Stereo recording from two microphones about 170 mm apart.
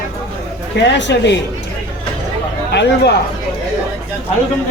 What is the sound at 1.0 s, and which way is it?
Speech, 90° left.